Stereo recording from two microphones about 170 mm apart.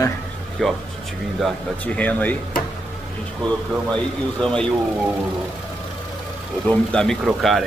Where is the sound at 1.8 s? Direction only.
10° left (ahead or behind).